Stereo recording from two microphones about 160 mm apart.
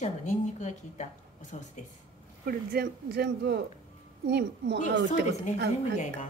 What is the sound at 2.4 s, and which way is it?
Speech, 75° right (ahead or behind).